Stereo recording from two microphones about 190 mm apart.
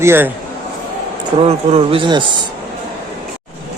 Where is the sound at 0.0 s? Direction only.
15° right (ahead or behind).